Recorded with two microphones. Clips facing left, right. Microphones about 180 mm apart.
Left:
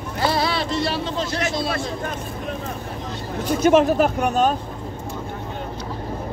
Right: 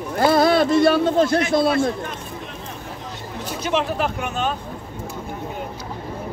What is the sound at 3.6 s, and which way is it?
Speech, 45° left (ahead or behind).